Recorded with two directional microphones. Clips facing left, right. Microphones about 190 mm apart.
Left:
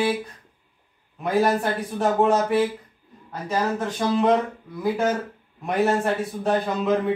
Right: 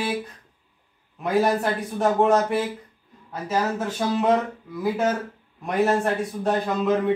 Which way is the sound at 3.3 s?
5° right (ahead or behind).